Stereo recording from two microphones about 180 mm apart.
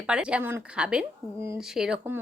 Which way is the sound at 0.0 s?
5° right (ahead or behind).